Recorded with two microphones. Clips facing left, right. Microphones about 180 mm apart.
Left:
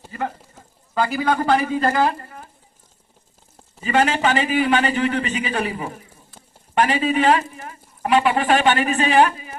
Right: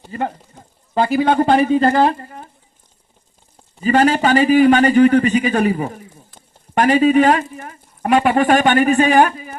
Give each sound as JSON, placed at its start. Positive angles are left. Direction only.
{"t": 0.1, "sound": "a man's voice", "side_deg": -30}
{"t": 3.8, "sound": "a man's voice", "side_deg": -40}